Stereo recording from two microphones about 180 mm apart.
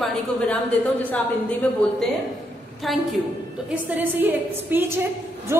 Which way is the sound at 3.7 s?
10° right (ahead or behind).